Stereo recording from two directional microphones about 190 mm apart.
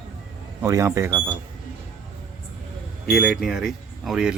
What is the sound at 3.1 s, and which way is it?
Speech, 5° right (ahead or behind).